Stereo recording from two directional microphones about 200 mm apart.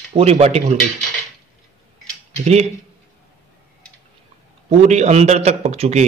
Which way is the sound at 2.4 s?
30° right (ahead or behind).